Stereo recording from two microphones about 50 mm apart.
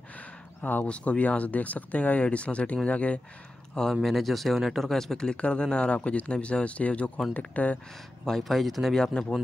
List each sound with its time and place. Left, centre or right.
0.8 s speech: left
3.9 s speech: centre; by 7.8 s left
8.3 s speech: centre
8.9 s speech: centre